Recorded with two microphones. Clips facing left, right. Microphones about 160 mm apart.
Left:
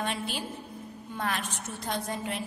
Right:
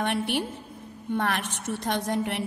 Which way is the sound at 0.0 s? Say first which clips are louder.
Right 6 dB; 65° right (ahead or behind).